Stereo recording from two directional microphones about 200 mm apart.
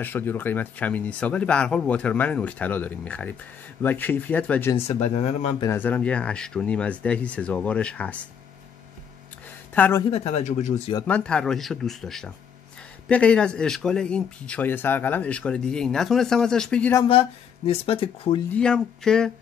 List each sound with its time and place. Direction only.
0.0 s speech: 10° left (ahead or behind)
4.7 s speech: 30° left (ahead or behind)
5.7 s speech: 10° left (ahead or behind)
9.8 s speech: 10° left (ahead or behind)
10.1 s speech: 30° left (ahead or behind)
11.1 s speech: 5° left (ahead or behind)
17.0 s speech: 30° left (ahead or behind)
18.5 s speech: 5° left (ahead or behind)